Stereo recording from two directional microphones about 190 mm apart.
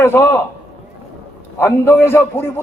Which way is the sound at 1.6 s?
15° left (ahead or behind).